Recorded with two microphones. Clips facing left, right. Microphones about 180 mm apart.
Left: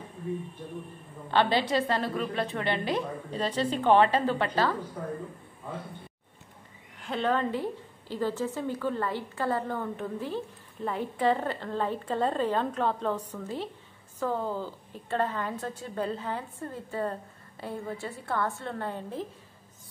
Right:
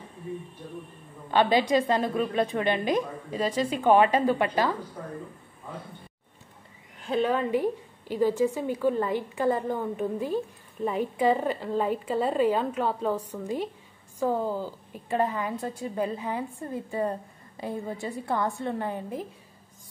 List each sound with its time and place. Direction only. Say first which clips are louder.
1.3 s a woman's voice: right 3 dB; 15° right (ahead or behind)
7.1 s a woman's voice: right 3 dB; 10° right (ahead or behind)